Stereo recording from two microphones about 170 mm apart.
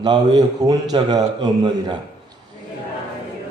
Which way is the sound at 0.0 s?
25° right (ahead or behind).